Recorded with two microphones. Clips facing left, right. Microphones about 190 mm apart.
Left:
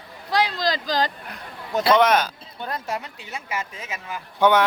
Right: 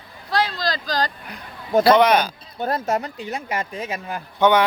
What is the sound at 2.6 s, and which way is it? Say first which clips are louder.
Speech: right 7 dB; 45° right (ahead or behind).